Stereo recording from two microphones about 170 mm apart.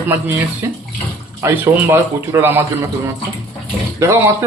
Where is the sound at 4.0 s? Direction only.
15° right (ahead or behind).